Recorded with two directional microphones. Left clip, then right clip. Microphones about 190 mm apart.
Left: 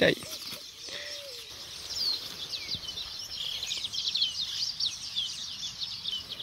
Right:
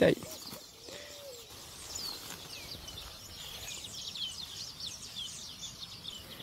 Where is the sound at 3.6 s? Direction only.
50° right (ahead or behind).